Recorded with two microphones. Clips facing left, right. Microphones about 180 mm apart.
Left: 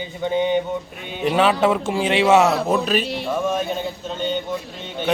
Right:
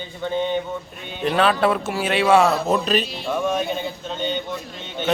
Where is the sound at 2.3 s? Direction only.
15° left (ahead or behind).